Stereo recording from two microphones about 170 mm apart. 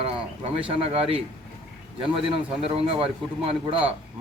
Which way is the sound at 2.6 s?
35° right (ahead or behind).